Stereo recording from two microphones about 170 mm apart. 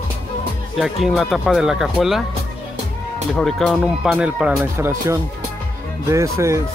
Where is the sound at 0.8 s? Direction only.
Centre (ahead or behind).